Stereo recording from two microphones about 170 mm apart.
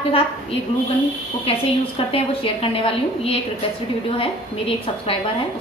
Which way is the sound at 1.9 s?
30° left (ahead or behind).